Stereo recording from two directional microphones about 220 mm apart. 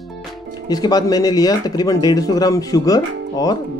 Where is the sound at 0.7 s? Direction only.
20° left (ahead or behind).